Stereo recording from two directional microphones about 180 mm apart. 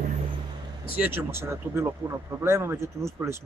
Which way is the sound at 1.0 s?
10° right (ahead or behind).